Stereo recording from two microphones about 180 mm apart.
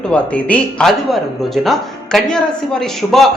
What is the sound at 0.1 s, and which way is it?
A man's voice, 5° left (ahead or behind).